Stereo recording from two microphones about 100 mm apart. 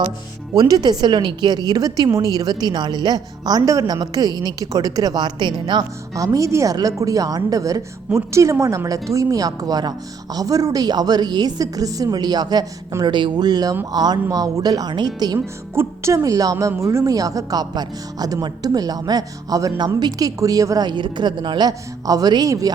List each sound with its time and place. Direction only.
0.5 s a woman's voice: 40° right (ahead or behind)
6.1 s a woman's voice: 35° right (ahead or behind)
15.7 s a woman's voice: 25° right (ahead or behind)